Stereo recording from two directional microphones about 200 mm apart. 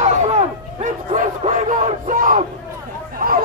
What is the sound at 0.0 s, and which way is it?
Bow-wow, 35° right (ahead or behind).